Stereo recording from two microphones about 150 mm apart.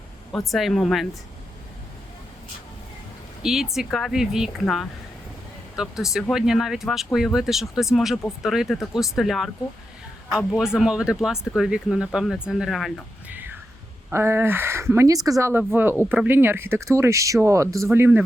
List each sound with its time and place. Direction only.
0.3 s speech: centre (ahead or behind)
3.4 s speech: 5° right (ahead or behind)
10.6 s speech: 5° right (ahead or behind)
13.3 s a sound: 10° right (ahead or behind)
14.1 s speech: 15° right (ahead or behind)